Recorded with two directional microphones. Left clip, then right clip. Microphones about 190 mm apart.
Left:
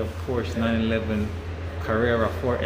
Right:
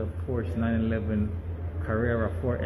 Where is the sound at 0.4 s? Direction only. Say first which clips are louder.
Left 5 dB; centre (ahead or behind).